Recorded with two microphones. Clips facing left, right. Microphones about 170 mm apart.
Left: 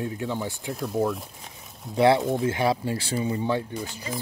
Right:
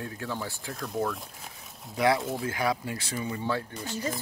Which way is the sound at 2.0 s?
30° left (ahead or behind).